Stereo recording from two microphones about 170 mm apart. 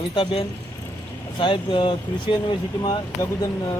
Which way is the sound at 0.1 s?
30° left (ahead or behind).